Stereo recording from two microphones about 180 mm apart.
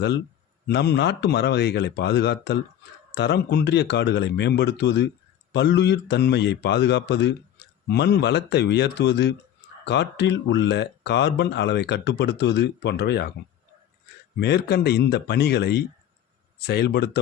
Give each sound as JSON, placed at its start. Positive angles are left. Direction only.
{"t": 0.7, "sound": "speech", "side_deg": 70}
{"t": 14.3, "sound": "speech", "side_deg": 65}